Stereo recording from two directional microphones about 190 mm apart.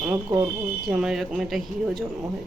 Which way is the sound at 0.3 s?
25° right (ahead or behind).